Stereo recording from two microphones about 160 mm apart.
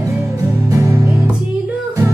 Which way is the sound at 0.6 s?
20° right (ahead or behind).